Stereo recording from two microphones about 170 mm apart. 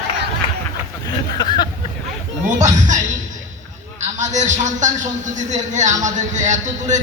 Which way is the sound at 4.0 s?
45° right (ahead or behind).